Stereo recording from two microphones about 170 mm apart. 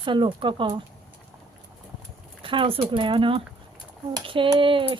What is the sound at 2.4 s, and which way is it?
Speech, 30° right (ahead or behind).